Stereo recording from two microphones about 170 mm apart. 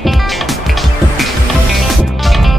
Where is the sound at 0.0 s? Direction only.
Centre (ahead or behind).